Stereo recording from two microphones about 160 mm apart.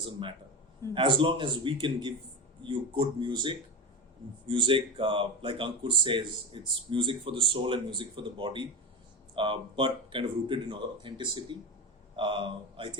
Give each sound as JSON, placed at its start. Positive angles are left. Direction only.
{"t": 0.9, "sound": "a man's voice", "side_deg": -30}